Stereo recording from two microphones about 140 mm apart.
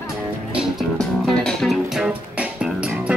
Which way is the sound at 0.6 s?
Centre (ahead or behind).